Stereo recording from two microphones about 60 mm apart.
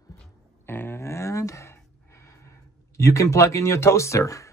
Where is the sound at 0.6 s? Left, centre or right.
Left.